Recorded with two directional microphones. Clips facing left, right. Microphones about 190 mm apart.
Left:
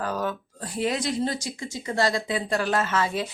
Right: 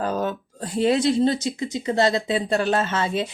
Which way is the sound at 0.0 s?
25° right (ahead or behind).